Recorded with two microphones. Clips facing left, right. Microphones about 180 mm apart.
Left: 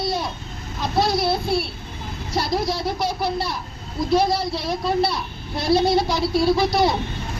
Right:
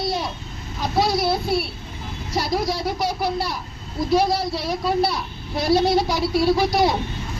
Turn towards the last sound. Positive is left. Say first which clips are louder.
# even
turn(degrees=-10)  # may be behind; listen again after turning